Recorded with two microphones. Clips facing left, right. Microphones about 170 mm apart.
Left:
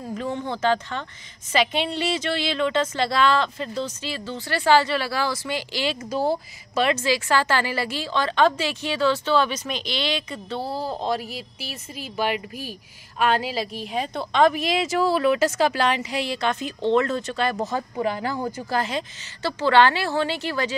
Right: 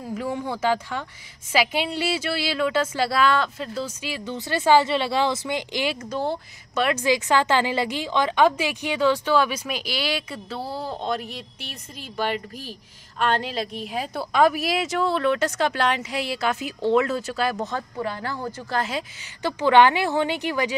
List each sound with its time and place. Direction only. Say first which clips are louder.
0.0 s speech: even; 10° right (ahead or behind)
6.3 s a woman's voice: left 2 dB; centre (ahead or behind)
7.0 s a woman's voice: right 1 dB; 15° right (ahead or behind); by 17.7 s centre (ahead or behind)
17.9 s speech: left 4 dB; 15° left (ahead or behind)
18.8 s a woman's voice: even; 5° right (ahead or behind)
19.4 s speech: right 1 dB; 15° right (ahead or behind)